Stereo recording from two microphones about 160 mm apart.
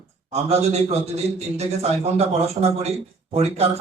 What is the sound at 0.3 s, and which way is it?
A man's voice, 40° right (ahead or behind).